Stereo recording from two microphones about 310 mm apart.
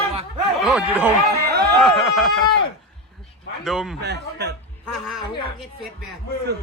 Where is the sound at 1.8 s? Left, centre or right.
Centre.